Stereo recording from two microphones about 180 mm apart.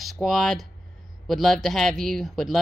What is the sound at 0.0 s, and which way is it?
Speech, centre (ahead or behind).